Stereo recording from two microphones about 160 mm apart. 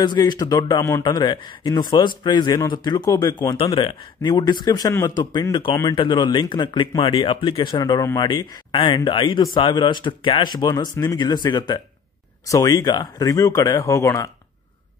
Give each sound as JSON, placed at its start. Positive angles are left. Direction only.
{"t": 0.0, "sound": "speech", "side_deg": 25}